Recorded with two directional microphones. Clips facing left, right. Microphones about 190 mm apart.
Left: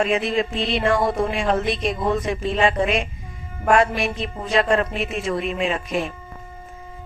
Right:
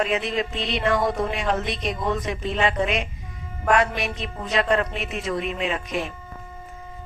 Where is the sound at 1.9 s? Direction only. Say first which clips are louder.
Left 3 dB; 30° left (ahead or behind).